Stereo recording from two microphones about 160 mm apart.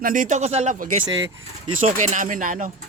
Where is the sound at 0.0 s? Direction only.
55° right (ahead or behind).